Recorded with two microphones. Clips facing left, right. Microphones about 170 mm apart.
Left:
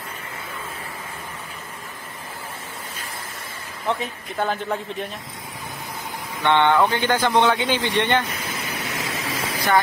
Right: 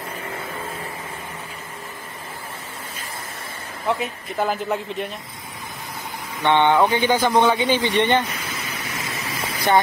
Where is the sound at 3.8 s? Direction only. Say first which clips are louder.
Right 2 dB; 5° right (ahead or behind).